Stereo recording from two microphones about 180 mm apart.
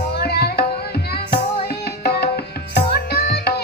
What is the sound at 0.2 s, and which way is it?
Tabla, 60° left (ahead or behind).